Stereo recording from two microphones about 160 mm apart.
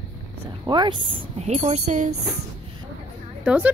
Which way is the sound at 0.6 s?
30° right (ahead or behind).